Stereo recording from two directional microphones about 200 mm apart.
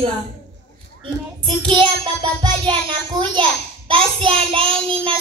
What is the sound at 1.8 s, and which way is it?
A child's voice, 25° right (ahead or behind).